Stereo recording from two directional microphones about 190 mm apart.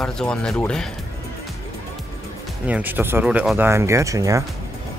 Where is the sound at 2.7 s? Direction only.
10° right (ahead or behind).